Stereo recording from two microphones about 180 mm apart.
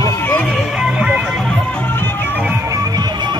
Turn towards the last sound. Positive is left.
turn(degrees=-25)  # may be behind; listen again after turning